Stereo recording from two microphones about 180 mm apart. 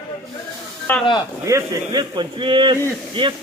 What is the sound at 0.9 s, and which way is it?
Speech, 10° left (ahead or behind).